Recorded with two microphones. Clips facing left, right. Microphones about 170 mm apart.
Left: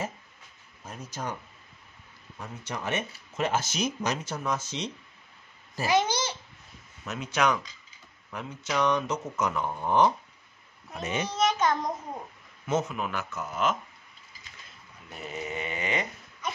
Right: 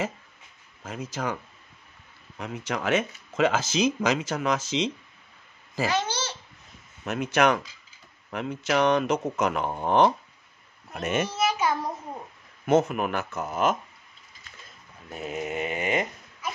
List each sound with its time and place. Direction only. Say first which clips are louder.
0.8 s speech: right 5 dB; 90° right
2.3 s speech: right 6 dB; 75° right (ahead or behind)
5.9 s a child's voice: left 4 dB; 15° left (ahead or behind)
7.1 s speech: right 4 dB; 60° right (ahead or behind)
11.2 s a sound: even; 5° right (ahead or behind)
12.6 s speech: right 7 dB; 60° right (ahead or behind)
15.3 s mantra: right 4 dB; 50° right (ahead or behind)
16.4 s a sound: right 1 dB; 5° right (ahead or behind)